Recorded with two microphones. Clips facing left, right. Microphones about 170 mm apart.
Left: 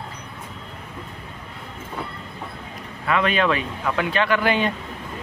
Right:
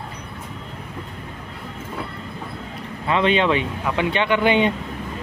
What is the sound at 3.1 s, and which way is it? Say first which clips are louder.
Speech: right 2 dB; 25° right (ahead or behind).